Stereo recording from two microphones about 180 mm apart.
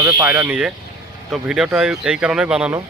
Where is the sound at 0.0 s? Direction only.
15° right (ahead or behind).